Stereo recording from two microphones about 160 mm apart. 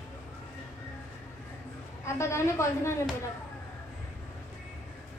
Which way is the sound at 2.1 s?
15° left (ahead or behind).